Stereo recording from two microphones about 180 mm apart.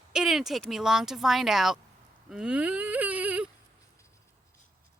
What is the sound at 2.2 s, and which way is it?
Baby cry, 5° right (ahead or behind).